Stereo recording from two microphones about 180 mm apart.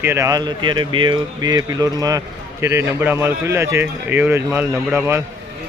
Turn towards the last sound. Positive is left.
turn(degrees=-15)  # may be behind; listen again after turning